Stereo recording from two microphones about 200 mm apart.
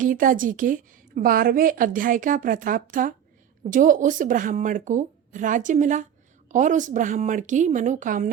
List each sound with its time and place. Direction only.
0.0 s a woman's voice: 40° right (ahead or behind)